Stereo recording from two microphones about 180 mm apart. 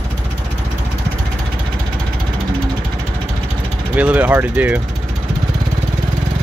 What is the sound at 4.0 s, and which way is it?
Speech, 10° right (ahead or behind).